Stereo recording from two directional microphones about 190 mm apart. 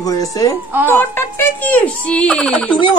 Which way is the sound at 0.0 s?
20° left (ahead or behind).